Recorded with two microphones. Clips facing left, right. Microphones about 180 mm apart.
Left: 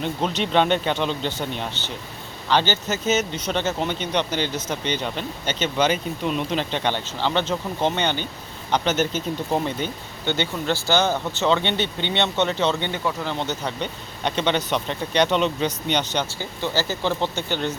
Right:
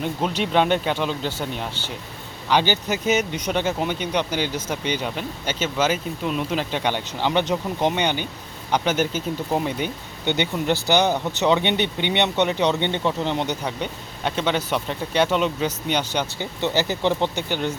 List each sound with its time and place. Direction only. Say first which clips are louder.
0.0 s speech: even; 5° right (ahead or behind)
16.4 s speech: right 2 dB; 20° right (ahead or behind)